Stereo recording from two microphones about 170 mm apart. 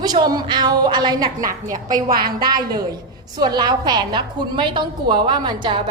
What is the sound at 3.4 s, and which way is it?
A woman's voice, 25° right (ahead or behind).